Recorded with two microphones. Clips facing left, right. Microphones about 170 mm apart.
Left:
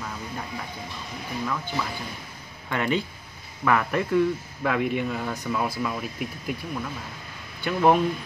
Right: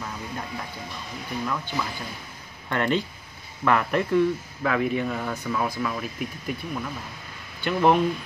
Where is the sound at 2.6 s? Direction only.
10° left (ahead or behind).